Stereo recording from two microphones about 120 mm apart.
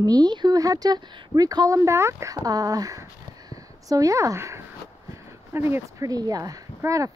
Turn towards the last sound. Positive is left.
turn(degrees=-25)  # may be behind; listen again after turning